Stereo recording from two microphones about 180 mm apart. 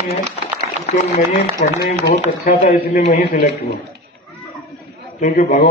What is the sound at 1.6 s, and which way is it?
Speech, 55° left (ahead or behind).